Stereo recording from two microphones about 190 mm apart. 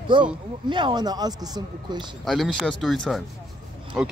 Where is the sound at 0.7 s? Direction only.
25° right (ahead or behind).